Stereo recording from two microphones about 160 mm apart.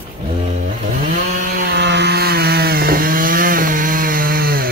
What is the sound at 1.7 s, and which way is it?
Chainsaw, 90° right.